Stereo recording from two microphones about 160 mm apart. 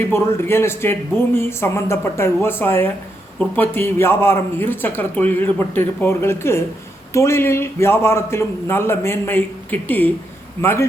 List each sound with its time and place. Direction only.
0.1 s speech: 15° left (ahead or behind)